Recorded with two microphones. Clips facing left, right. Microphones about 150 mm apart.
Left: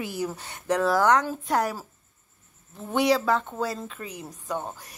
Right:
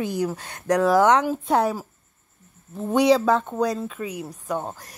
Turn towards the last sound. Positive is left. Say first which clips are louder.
# right 4 dB
turn(degrees=-15)  # may be behind; listen again after turning